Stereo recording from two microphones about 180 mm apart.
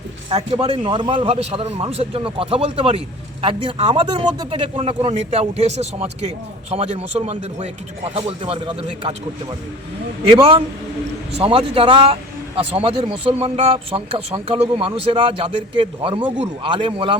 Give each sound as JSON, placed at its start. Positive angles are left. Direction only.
{"t": 0.3, "sound": "speech", "side_deg": -30}
{"t": 10.2, "sound": "speech", "side_deg": -30}